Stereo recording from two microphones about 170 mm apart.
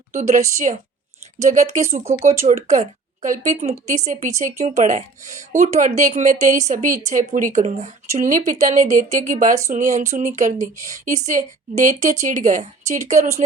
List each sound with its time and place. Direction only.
0.1 s speech: 45° right (ahead or behind)